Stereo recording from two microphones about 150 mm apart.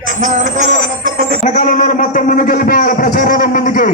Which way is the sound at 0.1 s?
60° right (ahead or behind).